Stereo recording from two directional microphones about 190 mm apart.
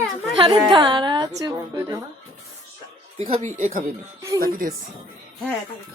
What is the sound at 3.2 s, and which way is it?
A woman's voice, 35° right (ahead or behind).